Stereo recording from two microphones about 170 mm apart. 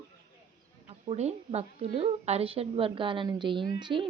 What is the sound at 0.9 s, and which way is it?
A woman's voice, 40° right (ahead or behind).